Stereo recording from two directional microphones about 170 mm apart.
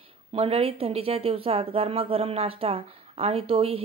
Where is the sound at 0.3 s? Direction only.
35° right (ahead or behind).